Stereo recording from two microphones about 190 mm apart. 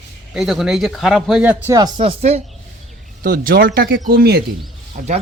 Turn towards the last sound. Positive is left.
turn(degrees=-45)  # may be behind; listen again after turning